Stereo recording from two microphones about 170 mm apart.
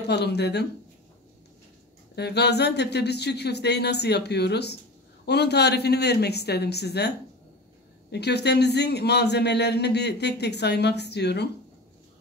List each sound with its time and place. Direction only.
0.0 s speech: 80° left
2.1 s speech: 75° left (ahead or behind)
8.1 s a man's voice: 75° left (ahead or behind)